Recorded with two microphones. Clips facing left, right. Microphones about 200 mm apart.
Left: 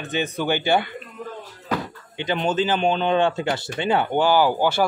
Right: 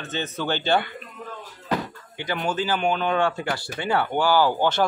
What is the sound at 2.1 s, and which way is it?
Speech, 20° left (ahead or behind).